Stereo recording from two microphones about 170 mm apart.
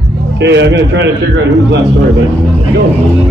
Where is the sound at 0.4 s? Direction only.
90° right.